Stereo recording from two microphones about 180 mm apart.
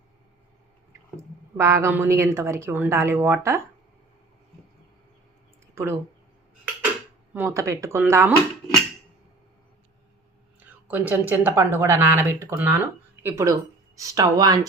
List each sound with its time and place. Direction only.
1.1 s a woman's voice: 15° right (ahead or behind)
5.7 s speech: 15° right (ahead or behind)
7.3 s a woman's voice: 15° right (ahead or behind)
10.6 s a woman's voice: 10° right (ahead or behind)